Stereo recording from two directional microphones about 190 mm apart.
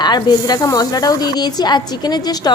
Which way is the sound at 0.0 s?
20° left (ahead or behind).